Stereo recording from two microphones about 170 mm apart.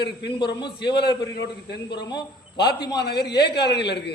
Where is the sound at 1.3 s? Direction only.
90° left.